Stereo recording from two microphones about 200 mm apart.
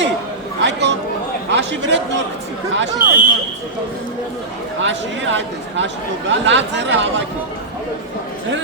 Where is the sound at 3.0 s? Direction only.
45° right (ahead or behind).